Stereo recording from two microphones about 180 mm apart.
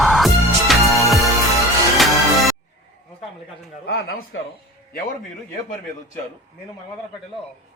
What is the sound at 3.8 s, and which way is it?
Speech, 65° left (ahead or behind).